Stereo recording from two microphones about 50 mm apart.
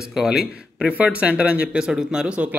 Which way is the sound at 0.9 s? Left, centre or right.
Right.